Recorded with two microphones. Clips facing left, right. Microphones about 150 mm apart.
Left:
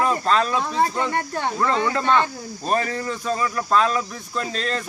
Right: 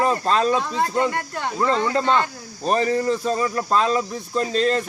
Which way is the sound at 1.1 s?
20° left (ahead or behind).